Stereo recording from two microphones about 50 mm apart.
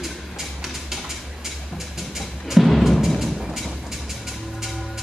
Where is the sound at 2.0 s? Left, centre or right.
Centre.